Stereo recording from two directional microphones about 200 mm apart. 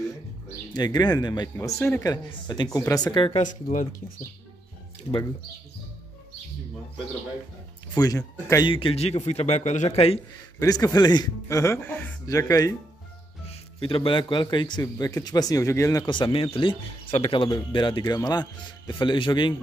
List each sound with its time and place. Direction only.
0.7 s a man's voice: 20° left (ahead or behind); by 3.8 s 40° left (ahead or behind)
7.9 s a man's voice: 20° left (ahead or behind)
10.6 s a man's voice: 15° left (ahead or behind)